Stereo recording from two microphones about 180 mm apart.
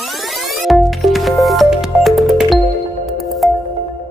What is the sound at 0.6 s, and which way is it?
Music, centre (ahead or behind).